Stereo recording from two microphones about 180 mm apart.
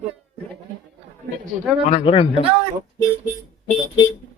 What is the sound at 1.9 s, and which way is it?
Speech, 30° left (ahead or behind).